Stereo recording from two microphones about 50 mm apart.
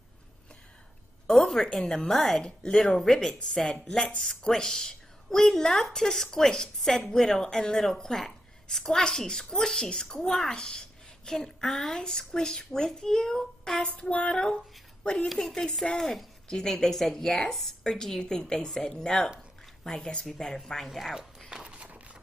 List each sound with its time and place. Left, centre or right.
1.2 s a woman's voice: centre
13.7 s a woman's voice: centre
15.2 s a woman's voice: centre
21.5 s walk: centre